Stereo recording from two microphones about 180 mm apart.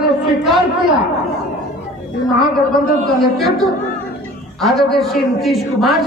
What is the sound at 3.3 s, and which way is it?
A woman's voice, centre (ahead or behind).